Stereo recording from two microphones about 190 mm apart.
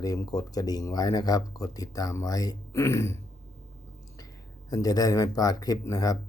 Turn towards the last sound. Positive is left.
turn(degrees=20)  # may be behind; listen again after turning